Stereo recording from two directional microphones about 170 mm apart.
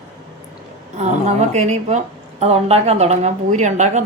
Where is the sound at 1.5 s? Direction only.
40° right (ahead or behind).